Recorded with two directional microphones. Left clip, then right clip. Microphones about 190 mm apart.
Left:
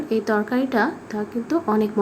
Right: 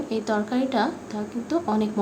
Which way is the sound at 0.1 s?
15° left (ahead or behind).